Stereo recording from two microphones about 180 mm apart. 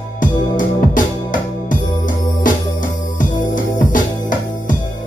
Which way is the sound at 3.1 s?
45° left (ahead or behind).